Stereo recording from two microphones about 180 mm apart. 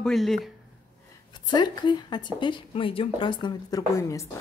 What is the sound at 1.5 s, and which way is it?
Speech, 25° left (ahead or behind).